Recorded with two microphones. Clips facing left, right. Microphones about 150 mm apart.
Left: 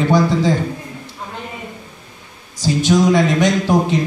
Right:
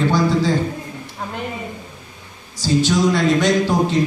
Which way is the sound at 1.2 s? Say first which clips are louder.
Right 3 dB; 60° right (ahead or behind).